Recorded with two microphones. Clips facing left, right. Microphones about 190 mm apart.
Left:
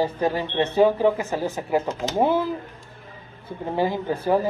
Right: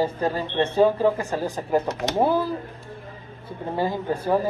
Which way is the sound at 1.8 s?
70° right (ahead or behind).